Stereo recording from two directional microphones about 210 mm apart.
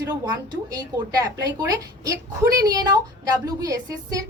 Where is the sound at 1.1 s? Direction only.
15° right (ahead or behind).